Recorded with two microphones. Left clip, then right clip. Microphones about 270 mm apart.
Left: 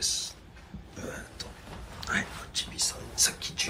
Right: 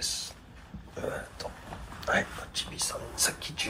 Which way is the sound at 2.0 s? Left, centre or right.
Centre.